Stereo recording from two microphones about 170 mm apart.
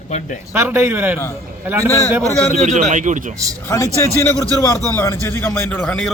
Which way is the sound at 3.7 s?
15° left (ahead or behind).